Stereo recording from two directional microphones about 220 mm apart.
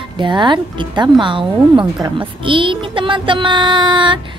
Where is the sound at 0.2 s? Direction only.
20° right (ahead or behind).